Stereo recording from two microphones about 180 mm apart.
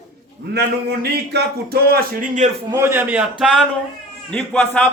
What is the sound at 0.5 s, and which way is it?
Speech, 65° right (ahead or behind).